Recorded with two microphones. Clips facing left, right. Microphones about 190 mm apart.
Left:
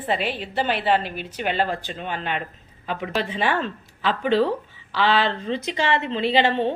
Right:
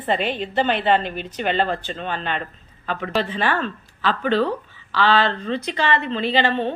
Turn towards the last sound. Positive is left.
turn(degrees=20)  # may be behind; listen again after turning